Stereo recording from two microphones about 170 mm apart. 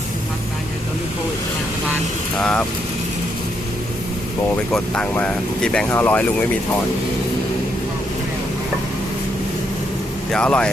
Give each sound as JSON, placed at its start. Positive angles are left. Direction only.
{"t": 2.4, "sound": "speech", "side_deg": 5}
{"t": 4.7, "sound": "speech", "side_deg": 5}
{"t": 10.3, "sound": "speech", "side_deg": 5}